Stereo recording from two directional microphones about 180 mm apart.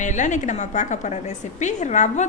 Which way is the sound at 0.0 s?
40° left (ahead or behind).